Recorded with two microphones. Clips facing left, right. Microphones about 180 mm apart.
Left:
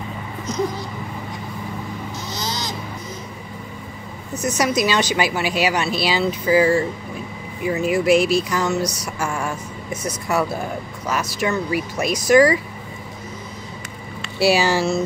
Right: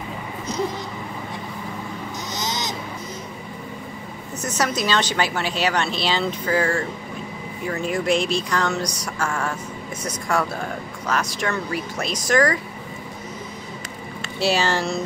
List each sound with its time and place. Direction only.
2.2 s owl: 20° right (ahead or behind)
4.4 s a woman's voice: 10° left (ahead or behind)
14.4 s a woman's voice: 10° left (ahead or behind)